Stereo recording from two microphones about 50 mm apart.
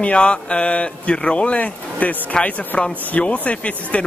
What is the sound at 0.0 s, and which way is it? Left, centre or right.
Speech, left.